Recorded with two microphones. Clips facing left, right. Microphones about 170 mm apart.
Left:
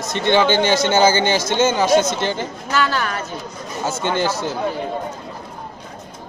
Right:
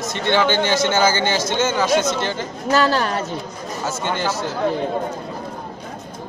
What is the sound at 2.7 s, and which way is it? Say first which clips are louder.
Speech: right 4 dB; 35° right (ahead or behind).